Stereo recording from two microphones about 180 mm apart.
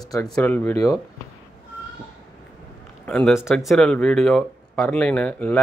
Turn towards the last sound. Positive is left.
turn(degrees=5)  # may be behind; listen again after turning